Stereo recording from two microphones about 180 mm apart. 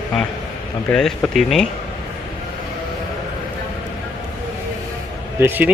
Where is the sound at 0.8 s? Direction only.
5° left (ahead or behind).